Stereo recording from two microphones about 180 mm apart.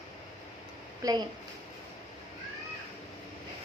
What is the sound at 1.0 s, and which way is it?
Speech, 20° right (ahead or behind).